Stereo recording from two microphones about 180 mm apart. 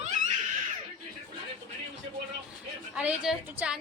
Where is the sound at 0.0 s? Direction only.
40° right (ahead or behind).